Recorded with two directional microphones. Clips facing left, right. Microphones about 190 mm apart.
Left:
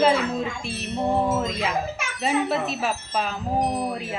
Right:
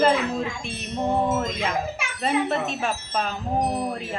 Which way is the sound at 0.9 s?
20° right (ahead or behind).